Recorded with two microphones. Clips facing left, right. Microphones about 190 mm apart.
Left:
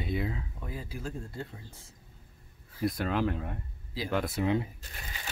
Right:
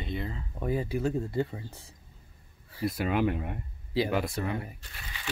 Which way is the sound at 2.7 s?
5° right (ahead or behind).